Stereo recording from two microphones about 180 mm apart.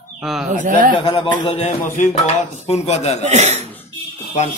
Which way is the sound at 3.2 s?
40° right (ahead or behind).